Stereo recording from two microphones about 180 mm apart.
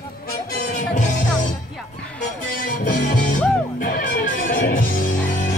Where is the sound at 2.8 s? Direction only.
50° left (ahead or behind).